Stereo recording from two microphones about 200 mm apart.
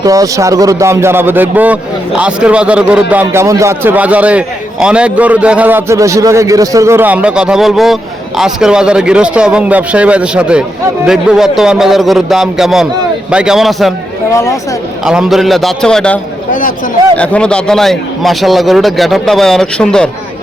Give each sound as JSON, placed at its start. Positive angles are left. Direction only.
{"t": 0.0, "sound": "a man's voice", "side_deg": -15}
{"t": 14.3, "sound": "speech", "side_deg": 15}
{"t": 15.0, "sound": "a man's voice", "side_deg": -5}
{"t": 16.5, "sound": "speech", "side_deg": 40}
{"t": 17.2, "sound": "a man's voice", "side_deg": 5}